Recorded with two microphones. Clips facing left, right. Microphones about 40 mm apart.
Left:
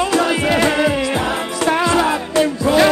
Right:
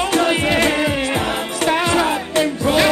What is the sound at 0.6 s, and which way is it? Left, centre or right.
Music, left.